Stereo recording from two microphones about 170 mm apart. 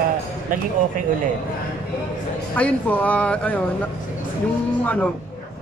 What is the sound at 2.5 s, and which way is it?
A woman's voice, 10° left (ahead or behind).